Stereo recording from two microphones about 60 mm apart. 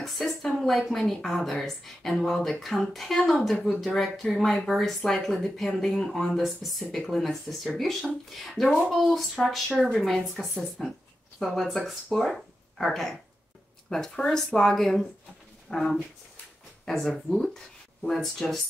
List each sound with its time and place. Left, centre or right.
0.0 s speech: centre
6.3 s speech: centre